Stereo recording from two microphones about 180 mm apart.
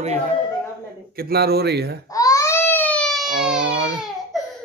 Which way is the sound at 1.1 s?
60° right (ahead or behind).